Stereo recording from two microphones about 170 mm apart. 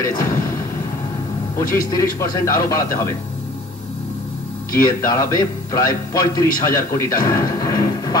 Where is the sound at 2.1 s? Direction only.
15° left (ahead or behind).